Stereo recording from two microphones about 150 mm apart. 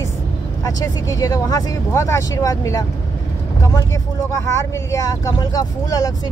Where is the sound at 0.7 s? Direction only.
20° left (ahead or behind).